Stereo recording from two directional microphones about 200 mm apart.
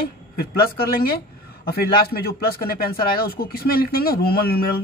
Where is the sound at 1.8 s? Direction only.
50° left (ahead or behind).